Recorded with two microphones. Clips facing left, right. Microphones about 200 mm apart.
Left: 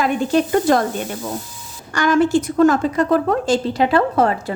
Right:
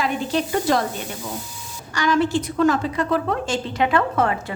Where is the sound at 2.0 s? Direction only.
50° left (ahead or behind).